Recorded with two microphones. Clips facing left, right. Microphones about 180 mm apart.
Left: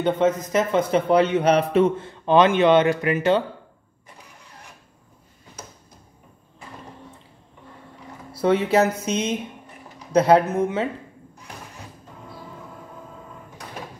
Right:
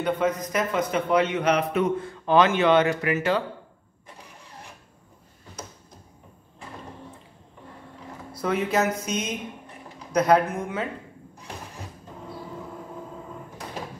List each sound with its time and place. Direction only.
0.0 s a man's voice: 25° left (ahead or behind)
8.4 s a man's voice: 30° left (ahead or behind)